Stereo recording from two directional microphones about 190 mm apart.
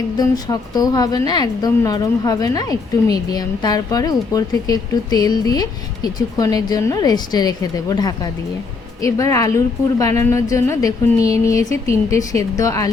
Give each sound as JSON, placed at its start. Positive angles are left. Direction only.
{"t": 0.2, "sound": "a woman's voice", "side_deg": 20}